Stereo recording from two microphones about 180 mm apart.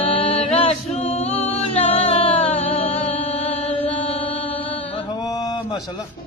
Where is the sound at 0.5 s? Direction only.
35° left (ahead or behind).